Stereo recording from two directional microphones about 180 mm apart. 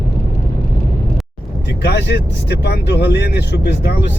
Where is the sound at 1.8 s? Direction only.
65° left (ahead or behind).